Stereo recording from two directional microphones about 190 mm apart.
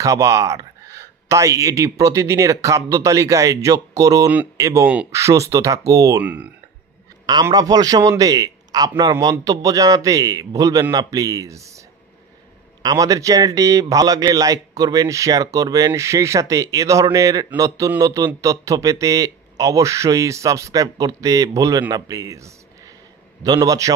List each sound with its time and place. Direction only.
0.0 s speech: 15° right (ahead or behind)
7.2 s a man's voice: 20° right (ahead or behind)
12.8 s a man's voice: 20° right (ahead or behind)